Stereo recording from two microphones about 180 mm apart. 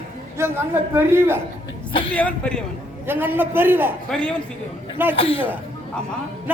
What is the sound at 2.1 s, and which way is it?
Speech, 5° left (ahead or behind).